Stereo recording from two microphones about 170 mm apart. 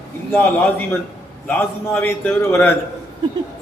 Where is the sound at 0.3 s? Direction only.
10° left (ahead or behind).